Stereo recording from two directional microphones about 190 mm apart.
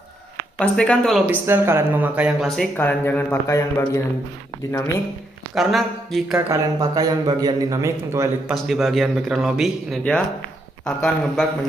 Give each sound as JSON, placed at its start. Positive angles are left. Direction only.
{"t": 0.6, "sound": "speech", "side_deg": 5}
{"t": 1.3, "sound": "speech", "side_deg": -10}
{"t": 5.5, "sound": "speech", "side_deg": 0}
{"t": 6.3, "sound": "speech", "side_deg": -20}
{"t": 8.5, "sound": "speech", "side_deg": 0}